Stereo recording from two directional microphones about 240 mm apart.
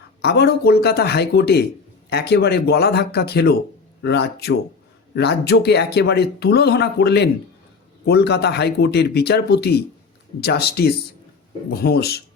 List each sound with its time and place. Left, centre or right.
0.2 s speech: left